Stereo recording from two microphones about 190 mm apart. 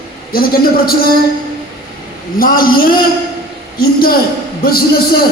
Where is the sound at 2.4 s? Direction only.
50° left (ahead or behind).